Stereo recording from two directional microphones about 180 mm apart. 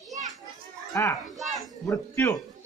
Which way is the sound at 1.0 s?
15° left (ahead or behind).